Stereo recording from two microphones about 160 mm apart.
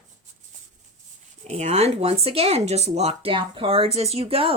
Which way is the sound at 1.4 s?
45° right (ahead or behind).